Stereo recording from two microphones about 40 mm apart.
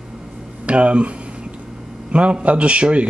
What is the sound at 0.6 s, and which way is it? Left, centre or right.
Speech, right.